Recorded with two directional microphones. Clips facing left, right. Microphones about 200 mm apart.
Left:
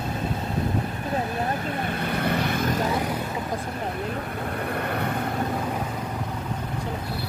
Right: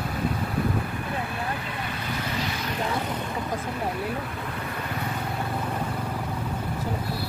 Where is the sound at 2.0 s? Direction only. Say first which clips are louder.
Left 6 dB; 55° left (ahead or behind).